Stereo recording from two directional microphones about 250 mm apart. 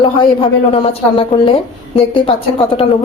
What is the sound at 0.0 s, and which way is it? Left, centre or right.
A woman's voice, left.